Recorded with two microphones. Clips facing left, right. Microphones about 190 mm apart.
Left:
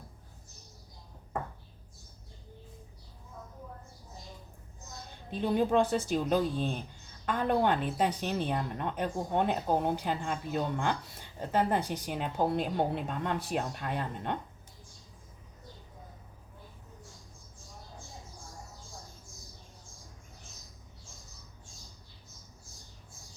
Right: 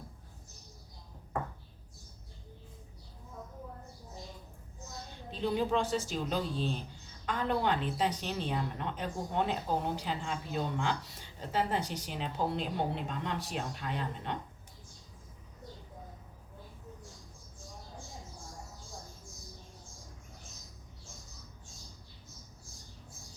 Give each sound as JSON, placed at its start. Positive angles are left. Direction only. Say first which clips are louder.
{"t": 5.3, "sound": "speech", "louder": "left 4 dB", "side_deg": 55}